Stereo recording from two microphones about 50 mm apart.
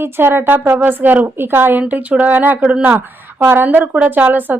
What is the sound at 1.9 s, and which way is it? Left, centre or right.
Speech, right.